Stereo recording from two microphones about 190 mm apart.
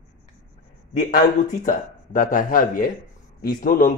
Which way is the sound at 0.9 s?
45° left (ahead or behind).